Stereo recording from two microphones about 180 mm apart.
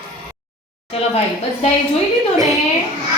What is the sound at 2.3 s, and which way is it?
Speech, 20° right (ahead or behind).